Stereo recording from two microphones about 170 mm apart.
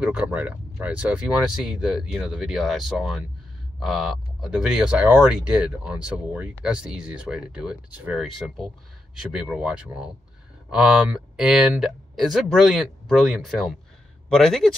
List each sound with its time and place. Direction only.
0.0 s speech: 5° right (ahead or behind)